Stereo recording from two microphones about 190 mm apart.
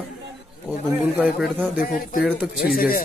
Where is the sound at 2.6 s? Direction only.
50° left (ahead or behind).